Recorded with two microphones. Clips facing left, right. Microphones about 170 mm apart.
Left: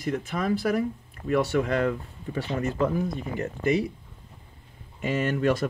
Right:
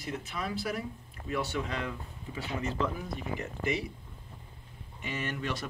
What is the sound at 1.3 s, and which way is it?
Speech, 60° left (ahead or behind).